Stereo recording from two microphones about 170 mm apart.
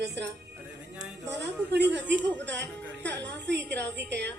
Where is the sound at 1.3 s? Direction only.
90° right.